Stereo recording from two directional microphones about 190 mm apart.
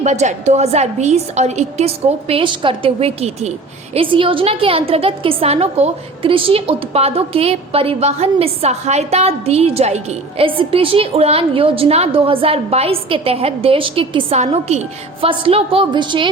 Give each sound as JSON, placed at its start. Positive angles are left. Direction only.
{"t": 0.0, "sound": "a woman's voice", "side_deg": -35}